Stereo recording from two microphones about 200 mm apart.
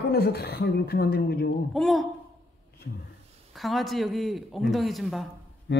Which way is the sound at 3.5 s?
Centre (ahead or behind).